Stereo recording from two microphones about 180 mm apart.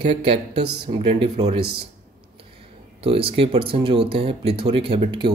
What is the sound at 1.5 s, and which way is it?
Speech, 60° right (ahead or behind).